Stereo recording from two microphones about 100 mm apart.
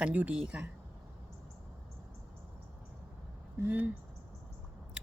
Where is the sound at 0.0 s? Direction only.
15° right (ahead or behind).